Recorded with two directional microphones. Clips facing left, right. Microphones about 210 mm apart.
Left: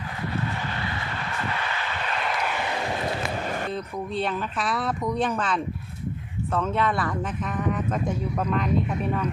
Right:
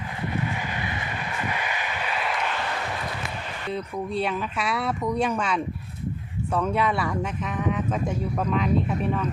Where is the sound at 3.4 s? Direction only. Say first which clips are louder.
Left 3 dB; 45° left (ahead or behind).